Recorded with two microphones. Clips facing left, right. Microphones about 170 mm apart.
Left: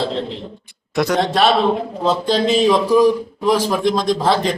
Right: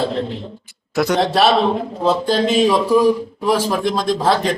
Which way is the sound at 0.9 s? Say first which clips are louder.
Right 1 dB; centre (ahead or behind).